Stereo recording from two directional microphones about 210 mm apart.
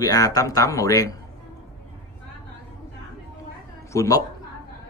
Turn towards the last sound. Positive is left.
turn(degrees=15)  # may be behind; listen again after turning